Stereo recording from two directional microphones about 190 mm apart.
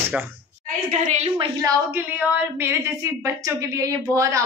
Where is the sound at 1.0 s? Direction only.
40° right (ahead or behind).